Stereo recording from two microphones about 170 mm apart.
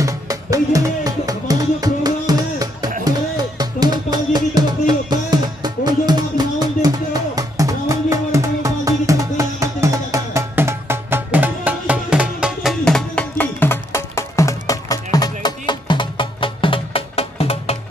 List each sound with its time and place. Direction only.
0.0 s music: 20° right (ahead or behind); by 17.7 s 35° left (ahead or behind)